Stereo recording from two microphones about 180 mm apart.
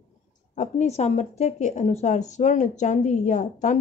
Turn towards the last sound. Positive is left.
turn(degrees=40)  # may be behind; listen again after turning